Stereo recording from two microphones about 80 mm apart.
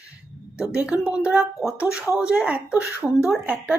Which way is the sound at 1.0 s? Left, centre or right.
Centre.